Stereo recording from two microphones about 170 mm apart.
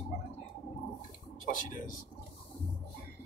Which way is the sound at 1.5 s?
50° left (ahead or behind).